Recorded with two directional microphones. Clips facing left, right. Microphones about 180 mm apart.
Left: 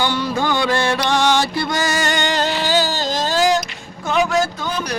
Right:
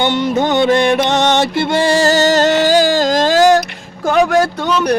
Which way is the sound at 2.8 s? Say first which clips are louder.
Right 9 dB; 90° right.